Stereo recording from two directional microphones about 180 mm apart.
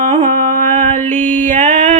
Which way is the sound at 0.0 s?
45° right (ahead or behind).